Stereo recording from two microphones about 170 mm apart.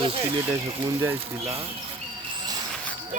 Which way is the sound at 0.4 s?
20° right (ahead or behind).